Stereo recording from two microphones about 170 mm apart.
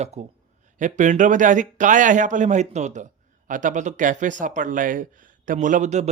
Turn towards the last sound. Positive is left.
turn(degrees=-45)  # may be behind; listen again after turning